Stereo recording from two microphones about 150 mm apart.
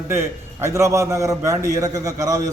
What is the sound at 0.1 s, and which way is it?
A man's voice, 20° right (ahead or behind).